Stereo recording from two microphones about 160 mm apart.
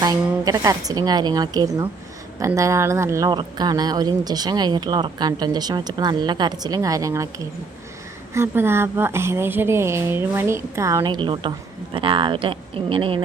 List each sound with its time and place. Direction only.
0.0 s speech: 25° right (ahead or behind)